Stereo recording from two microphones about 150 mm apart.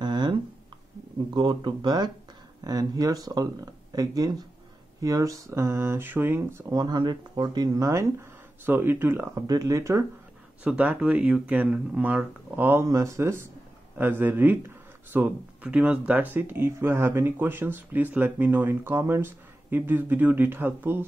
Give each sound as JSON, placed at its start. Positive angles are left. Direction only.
{"t": 0.0, "sound": "a sound", "side_deg": -30}
{"t": 1.3, "sound": "speech", "side_deg": -30}
{"t": 10.6, "sound": "speech", "side_deg": -10}